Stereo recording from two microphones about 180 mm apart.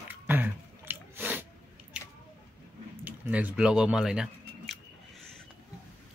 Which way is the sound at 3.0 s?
10° right (ahead or behind).